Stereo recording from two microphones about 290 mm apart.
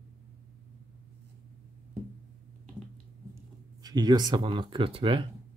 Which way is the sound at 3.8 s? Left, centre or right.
Centre.